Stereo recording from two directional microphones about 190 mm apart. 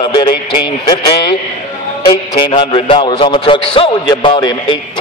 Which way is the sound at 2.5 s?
30° left (ahead or behind).